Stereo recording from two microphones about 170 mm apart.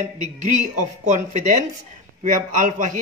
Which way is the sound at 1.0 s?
45° right (ahead or behind).